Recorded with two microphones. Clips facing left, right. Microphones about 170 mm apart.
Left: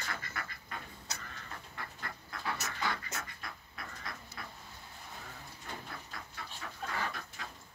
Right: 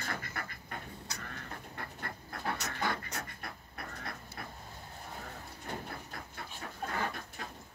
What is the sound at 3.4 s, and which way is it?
Vehicle, 55° right (ahead or behind).